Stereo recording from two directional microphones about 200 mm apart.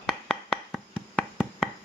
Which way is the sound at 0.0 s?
Centre (ahead or behind).